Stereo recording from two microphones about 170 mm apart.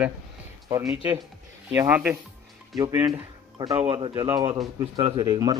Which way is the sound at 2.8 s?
20° right (ahead or behind).